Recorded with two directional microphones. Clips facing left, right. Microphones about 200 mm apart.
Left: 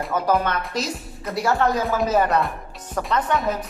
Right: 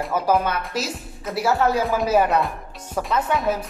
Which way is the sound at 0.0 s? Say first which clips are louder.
Right 1 dB; 5° right (ahead or behind).